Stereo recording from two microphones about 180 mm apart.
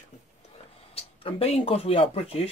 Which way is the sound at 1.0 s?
35° left (ahead or behind).